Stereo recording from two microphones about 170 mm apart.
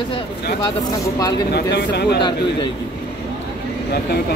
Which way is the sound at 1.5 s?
75° left (ahead or behind).